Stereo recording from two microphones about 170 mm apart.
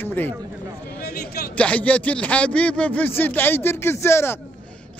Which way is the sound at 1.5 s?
10° left (ahead or behind).